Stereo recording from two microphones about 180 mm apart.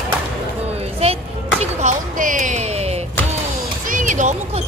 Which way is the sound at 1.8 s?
45° right (ahead or behind).